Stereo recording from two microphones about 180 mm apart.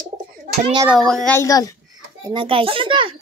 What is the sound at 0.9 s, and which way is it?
Speech, centre (ahead or behind).